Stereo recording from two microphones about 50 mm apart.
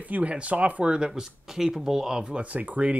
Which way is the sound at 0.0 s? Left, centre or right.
Right.